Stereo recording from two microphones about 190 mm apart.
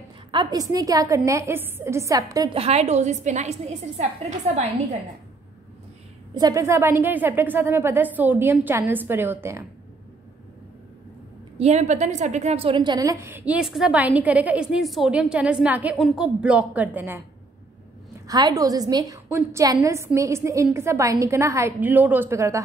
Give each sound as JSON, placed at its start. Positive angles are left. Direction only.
{"t": 0.3, "sound": "a woman's voice", "side_deg": -20}
{"t": 2.5, "sound": "a woman's voice", "side_deg": -35}
{"t": 6.3, "sound": "a woman's voice", "side_deg": -20}
{"t": 11.5, "sound": "a woman's voice", "side_deg": -35}
{"t": 18.2, "sound": "a woman's voice", "side_deg": -20}